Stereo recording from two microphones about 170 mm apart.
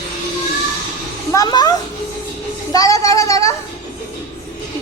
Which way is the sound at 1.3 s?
25° left (ahead or behind).